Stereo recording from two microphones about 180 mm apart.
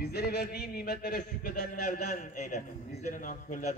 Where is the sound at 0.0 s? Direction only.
60° left (ahead or behind).